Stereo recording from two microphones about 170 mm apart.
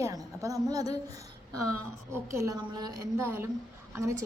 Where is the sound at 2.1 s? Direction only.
15° right (ahead or behind).